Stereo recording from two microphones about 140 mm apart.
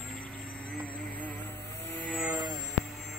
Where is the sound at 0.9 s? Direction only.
10° left (ahead or behind).